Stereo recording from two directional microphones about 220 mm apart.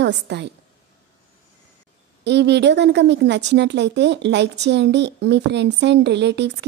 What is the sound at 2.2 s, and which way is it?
A woman's voice, 50° right (ahead or behind).